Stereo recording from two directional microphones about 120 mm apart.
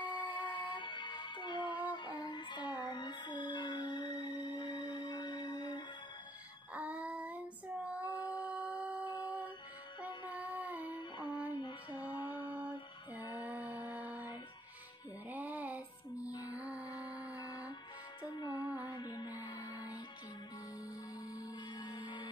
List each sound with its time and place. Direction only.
0.1 s music: 40° left (ahead or behind)
6.7 s female singing: 10° right (ahead or behind)
10.3 s a sound: 15° right (ahead or behind)
11.0 s music: 40° left (ahead or behind)
12.0 s music: 15° right (ahead or behind)
12.4 s a sound: 15° right (ahead or behind)
13.4 s music: 15° right (ahead or behind)
15.2 s music: 15° right (ahead or behind)
17.5 s music: 35° left (ahead or behind)
21.3 s music: 35° left (ahead or behind)